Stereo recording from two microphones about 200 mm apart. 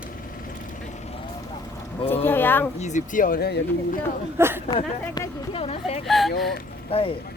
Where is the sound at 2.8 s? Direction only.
40° left (ahead or behind).